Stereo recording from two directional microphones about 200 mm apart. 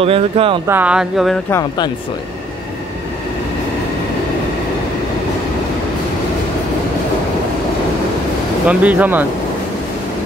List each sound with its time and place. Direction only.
0.0 s speech: 30° right (ahead or behind)
0.7 s speech: 10° right (ahead or behind)
1.5 s speech: 20° left (ahead or behind)
8.6 s speech: 10° right (ahead or behind)